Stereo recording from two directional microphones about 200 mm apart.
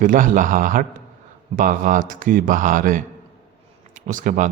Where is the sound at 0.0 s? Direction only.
40° right (ahead or behind).